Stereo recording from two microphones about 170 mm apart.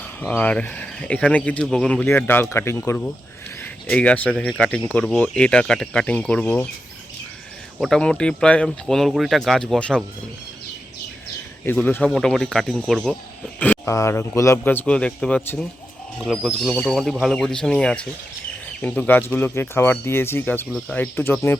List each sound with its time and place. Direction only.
0.2 s speech: 5° left (ahead or behind)
7.8 s speech: 5° left (ahead or behind)
11.6 s speech: 10° left (ahead or behind)
13.6 s speech: 15° left (ahead or behind)